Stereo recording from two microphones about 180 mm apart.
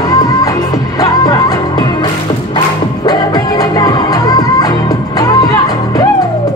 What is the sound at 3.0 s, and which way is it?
Music, 20° left (ahead or behind).